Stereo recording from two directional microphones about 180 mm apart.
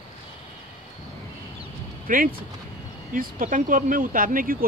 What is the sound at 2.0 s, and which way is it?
Speech, 50° right (ahead or behind).